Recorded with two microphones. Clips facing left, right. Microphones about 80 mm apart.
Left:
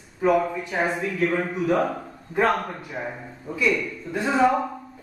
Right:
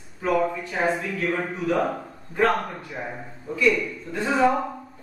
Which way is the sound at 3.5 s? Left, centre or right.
Centre.